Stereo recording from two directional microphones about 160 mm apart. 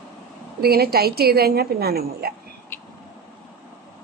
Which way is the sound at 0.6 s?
75° right (ahead or behind).